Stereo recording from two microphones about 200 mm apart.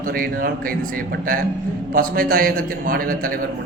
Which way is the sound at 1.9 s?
45° right (ahead or behind).